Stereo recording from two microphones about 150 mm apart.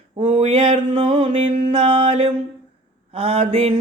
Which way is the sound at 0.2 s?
45° right (ahead or behind).